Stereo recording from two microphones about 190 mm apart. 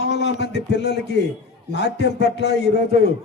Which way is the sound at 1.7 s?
65° left (ahead or behind).